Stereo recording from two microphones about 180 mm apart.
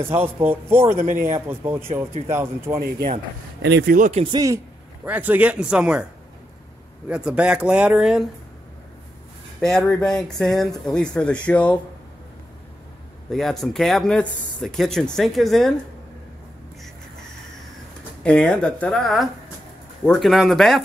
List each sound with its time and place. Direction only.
0.1 s speech: 10° right (ahead or behind)
0.9 s speech: 45° right (ahead or behind)
1.5 s speech: 10° right (ahead or behind)
2.8 s speech: 60° right (ahead or behind)
3.6 s speech: 75° right (ahead or behind)
3.9 s speech: 40° right (ahead or behind)
5.0 s speech: 10° right (ahead or behind)
7.1 s speech: 5° right (ahead or behind)
9.6 s speech: centre (ahead or behind)
13.3 s speech: centre (ahead or behind)
18.2 s speech: 5° left (ahead or behind)